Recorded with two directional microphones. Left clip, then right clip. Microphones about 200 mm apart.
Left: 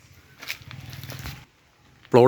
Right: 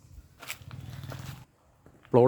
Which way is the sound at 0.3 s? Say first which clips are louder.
Left 7 dB; 5° left (ahead or behind).